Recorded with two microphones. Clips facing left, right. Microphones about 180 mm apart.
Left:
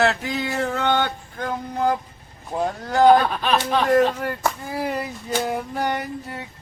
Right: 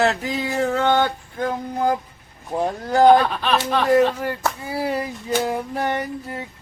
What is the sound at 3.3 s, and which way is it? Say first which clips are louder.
Speech: even; 10° left (ahead or behind).